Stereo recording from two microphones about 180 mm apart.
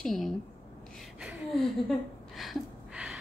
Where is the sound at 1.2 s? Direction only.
Centre (ahead or behind).